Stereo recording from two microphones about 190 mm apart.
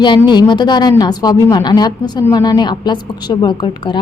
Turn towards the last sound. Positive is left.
turn(degrees=25)  # may be behind; listen again after turning